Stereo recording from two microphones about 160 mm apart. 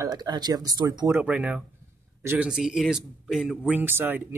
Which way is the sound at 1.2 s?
5° right (ahead or behind).